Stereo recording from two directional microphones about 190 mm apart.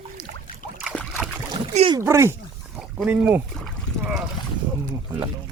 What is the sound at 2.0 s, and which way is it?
Speech, 15° right (ahead or behind).